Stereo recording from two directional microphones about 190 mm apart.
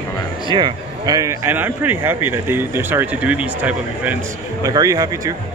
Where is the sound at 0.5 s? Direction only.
20° right (ahead or behind).